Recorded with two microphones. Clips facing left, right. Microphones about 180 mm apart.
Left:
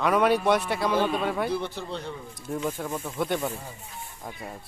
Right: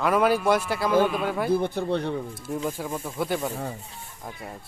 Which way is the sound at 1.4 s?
50° right (ahead or behind).